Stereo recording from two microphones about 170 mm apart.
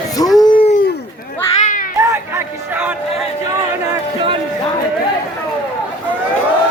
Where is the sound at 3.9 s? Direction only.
30° right (ahead or behind).